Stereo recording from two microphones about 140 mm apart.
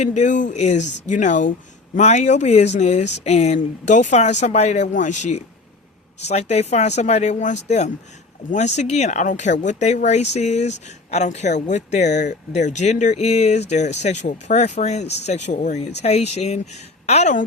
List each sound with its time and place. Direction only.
0.0 s speech: 55° left (ahead or behind)